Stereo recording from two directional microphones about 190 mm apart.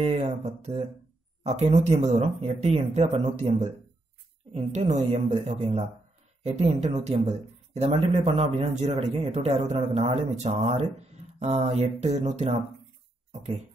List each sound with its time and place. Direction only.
0.0 s speech: 30° right (ahead or behind)